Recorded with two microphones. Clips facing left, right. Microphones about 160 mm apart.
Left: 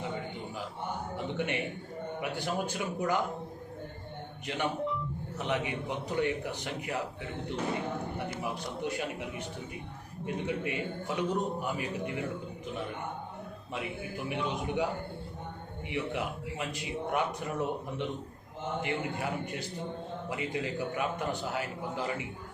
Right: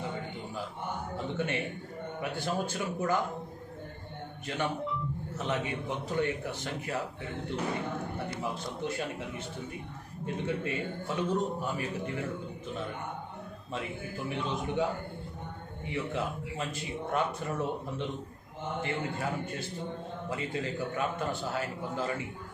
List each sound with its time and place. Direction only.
1.1 s a man's voice: 15° left (ahead or behind)
5.4 s a man's voice: 15° left (ahead or behind)
8.4 s a man's voice: 15° left (ahead or behind)
13.7 s a man's voice: 15° left (ahead or behind)
15.9 s a man's voice: 15° left (ahead or behind)